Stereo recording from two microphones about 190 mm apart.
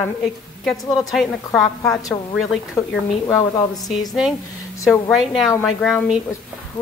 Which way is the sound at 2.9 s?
10° left (ahead or behind).